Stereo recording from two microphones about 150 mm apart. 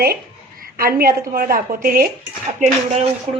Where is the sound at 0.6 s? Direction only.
75° right (ahead or behind).